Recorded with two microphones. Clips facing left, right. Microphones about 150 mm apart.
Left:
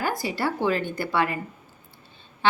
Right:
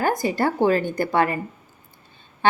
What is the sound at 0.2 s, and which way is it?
A woman's voice, 50° right (ahead or behind).